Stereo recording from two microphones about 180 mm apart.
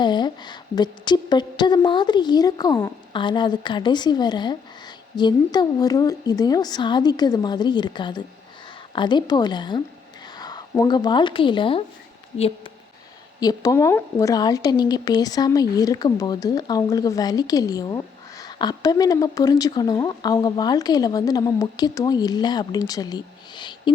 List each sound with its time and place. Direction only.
0.0 s a woman's voice: 25° left (ahead or behind)
13.4 s a woman's voice: 20° left (ahead or behind)